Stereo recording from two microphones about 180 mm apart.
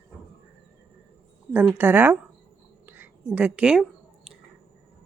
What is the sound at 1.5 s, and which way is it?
Speech, 10° right (ahead or behind).